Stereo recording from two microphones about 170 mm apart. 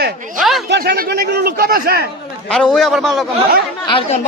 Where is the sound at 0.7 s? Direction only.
70° right (ahead or behind).